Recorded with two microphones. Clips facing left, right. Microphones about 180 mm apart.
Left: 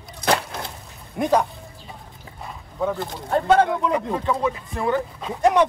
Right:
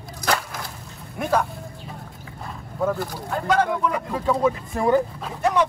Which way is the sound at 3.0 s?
20° left (ahead or behind).